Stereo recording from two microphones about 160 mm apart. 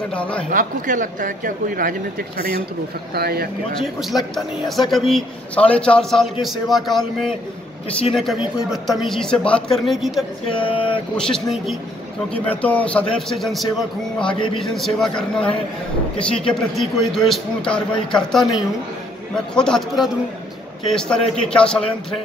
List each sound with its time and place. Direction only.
0.1 s a man's voice: 5° left (ahead or behind)
0.5 s speech: 55° right (ahead or behind)
3.2 s speech: 75° right (ahead or behind)
4.4 s a man's voice: centre (ahead or behind)
19.5 s speech: 5° left (ahead or behind)